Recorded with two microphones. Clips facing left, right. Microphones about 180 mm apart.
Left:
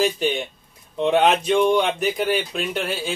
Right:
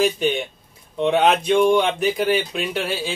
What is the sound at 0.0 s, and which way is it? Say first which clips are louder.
Speech: right 2 dB; centre (ahead or behind).